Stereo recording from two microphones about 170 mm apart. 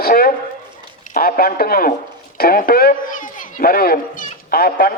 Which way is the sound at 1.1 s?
60° left (ahead or behind).